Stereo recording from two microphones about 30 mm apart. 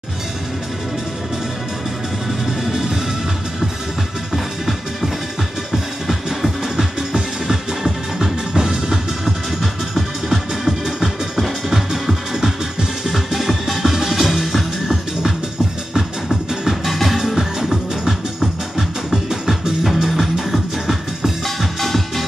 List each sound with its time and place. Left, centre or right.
2.4 s music: centre
4.3 s music: centre
6.8 s music: centre
9.2 s music: centre
11.9 s music: centre
17.2 s music: centre
21.5 s music: centre